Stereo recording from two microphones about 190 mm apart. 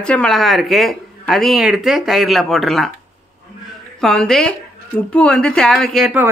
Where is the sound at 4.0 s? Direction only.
Centre (ahead or behind).